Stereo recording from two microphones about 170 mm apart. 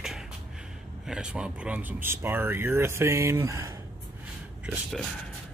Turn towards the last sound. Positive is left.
turn(degrees=-5)  # may be behind; listen again after turning